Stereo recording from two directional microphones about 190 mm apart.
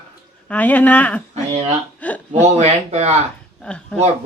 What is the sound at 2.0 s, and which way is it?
Speech, 10° left (ahead or behind).